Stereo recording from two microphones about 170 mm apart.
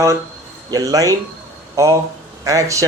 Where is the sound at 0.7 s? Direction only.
20° right (ahead or behind).